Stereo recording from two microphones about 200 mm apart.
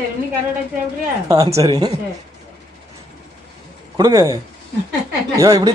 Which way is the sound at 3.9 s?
20° right (ahead or behind).